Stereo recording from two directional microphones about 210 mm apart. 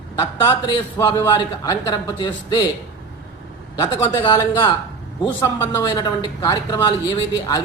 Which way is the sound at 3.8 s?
15° left (ahead or behind).